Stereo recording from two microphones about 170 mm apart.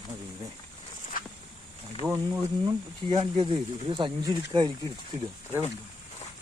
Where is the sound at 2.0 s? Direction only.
10° right (ahead or behind).